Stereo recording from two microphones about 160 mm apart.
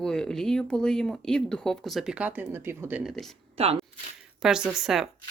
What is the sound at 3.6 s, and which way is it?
Speech, 40° right (ahead or behind).